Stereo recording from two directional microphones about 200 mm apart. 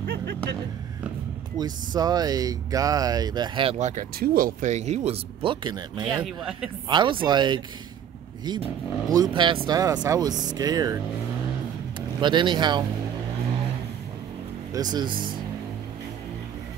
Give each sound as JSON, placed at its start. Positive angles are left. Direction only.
{"t": 0.0, "sound": "a sound", "side_deg": -55}
{"t": 1.6, "sound": "speech", "side_deg": -20}
{"t": 4.2, "sound": "speech", "side_deg": -45}
{"t": 6.1, "sound": "speech", "side_deg": -5}
{"t": 6.9, "sound": "speech", "side_deg": -25}
{"t": 9.1, "sound": "speech", "side_deg": -20}
{"t": 12.2, "sound": "speech", "side_deg": -25}
{"t": 14.7, "sound": "speech", "side_deg": -20}